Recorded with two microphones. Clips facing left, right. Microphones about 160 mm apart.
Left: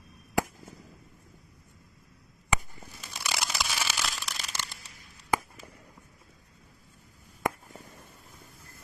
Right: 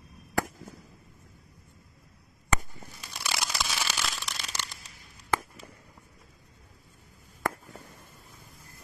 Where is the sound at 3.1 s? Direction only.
5° left (ahead or behind).